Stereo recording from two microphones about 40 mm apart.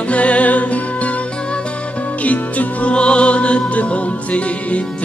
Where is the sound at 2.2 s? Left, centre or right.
Left.